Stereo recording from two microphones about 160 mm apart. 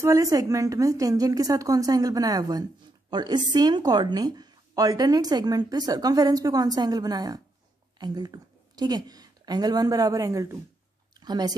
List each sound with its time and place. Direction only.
0.0 s a woman's voice: 20° right (ahead or behind)